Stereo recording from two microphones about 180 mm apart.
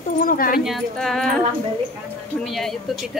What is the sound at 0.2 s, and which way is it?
Speech, 50° left (ahead or behind).